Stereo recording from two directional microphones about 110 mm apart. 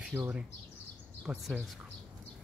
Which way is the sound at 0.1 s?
25° right (ahead or behind).